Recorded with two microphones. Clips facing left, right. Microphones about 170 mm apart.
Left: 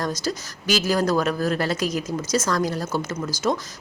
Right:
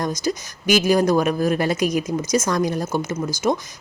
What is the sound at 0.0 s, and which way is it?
Speech, 15° right (ahead or behind).